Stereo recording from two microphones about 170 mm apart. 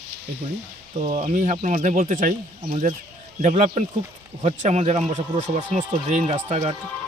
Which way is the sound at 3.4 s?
45° right (ahead or behind).